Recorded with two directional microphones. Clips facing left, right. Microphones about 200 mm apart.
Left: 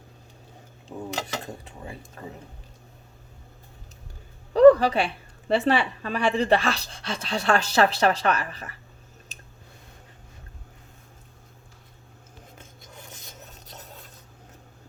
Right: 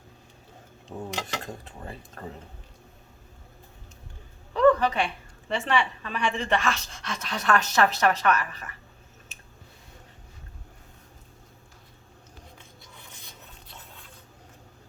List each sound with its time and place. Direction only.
4.5 s a woman's voice: 35° left (ahead or behind)
12.5 s filing: 45° left (ahead or behind)